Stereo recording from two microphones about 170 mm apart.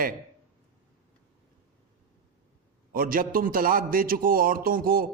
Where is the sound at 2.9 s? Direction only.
55° right (ahead or behind).